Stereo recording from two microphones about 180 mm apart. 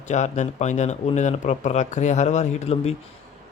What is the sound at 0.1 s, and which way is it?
Speech, 40° left (ahead or behind).